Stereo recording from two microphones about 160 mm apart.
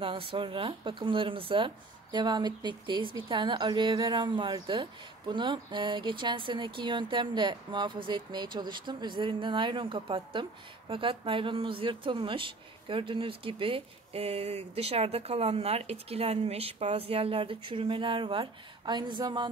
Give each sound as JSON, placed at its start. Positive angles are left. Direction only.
{"t": 0.0, "sound": "a woman's voice", "side_deg": -35}